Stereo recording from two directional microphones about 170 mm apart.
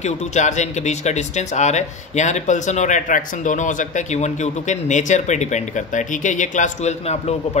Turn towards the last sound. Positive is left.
turn(degrees=40)  # may be behind; listen again after turning